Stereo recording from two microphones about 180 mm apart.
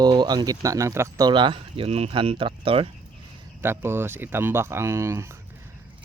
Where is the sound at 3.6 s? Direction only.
15° right (ahead or behind).